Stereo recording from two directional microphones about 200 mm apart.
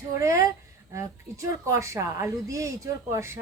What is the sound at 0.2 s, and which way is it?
A woman's voice, 15° right (ahead or behind).